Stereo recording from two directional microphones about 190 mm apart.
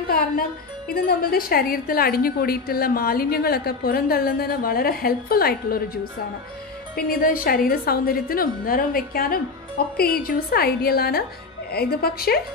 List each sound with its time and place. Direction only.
0.1 s speech: 50° left (ahead or behind)
7.0 s speech: 50° left (ahead or behind)